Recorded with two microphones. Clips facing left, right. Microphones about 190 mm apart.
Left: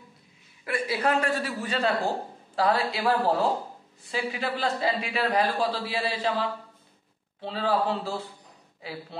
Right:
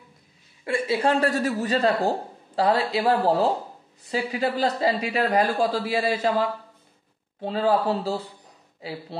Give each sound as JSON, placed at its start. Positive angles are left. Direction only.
{"t": 0.7, "sound": "a woman's voice", "side_deg": -25}
{"t": 1.3, "sound": "speech", "side_deg": -40}